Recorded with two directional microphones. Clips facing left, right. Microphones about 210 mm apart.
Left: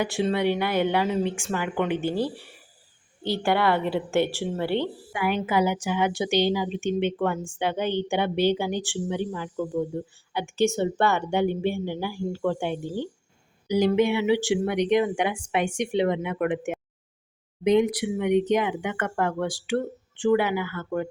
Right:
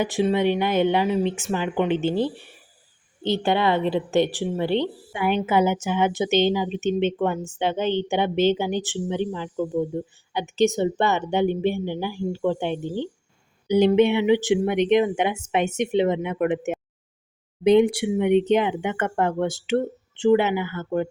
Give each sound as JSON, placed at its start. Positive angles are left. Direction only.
{"t": 0.0, "sound": "a woman's voice", "side_deg": -15}